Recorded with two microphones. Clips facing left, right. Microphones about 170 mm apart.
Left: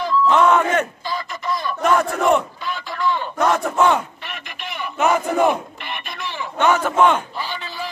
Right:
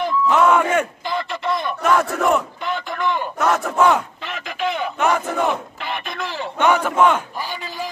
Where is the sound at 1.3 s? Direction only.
25° right (ahead or behind).